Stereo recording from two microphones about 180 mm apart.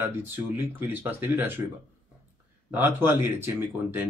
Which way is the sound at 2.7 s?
10° right (ahead or behind).